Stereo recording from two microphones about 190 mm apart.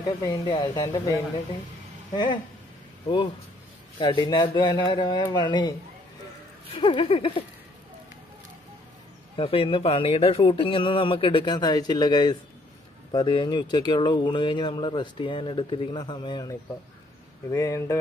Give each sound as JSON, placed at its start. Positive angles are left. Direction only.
{"t": 0.2, "sound": "speech", "side_deg": 25}
{"t": 4.0, "sound": "speech", "side_deg": 25}
{"t": 9.4, "sound": "speech", "side_deg": 30}